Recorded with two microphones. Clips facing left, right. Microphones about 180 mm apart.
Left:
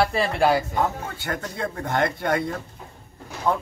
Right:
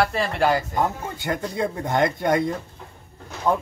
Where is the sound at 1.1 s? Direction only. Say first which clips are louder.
Right 4 dB; 15° right (ahead or behind).